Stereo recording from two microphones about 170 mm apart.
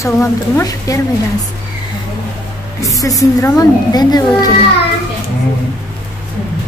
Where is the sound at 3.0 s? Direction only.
20° left (ahead or behind).